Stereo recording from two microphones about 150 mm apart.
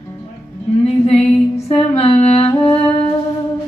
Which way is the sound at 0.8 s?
45° left (ahead or behind).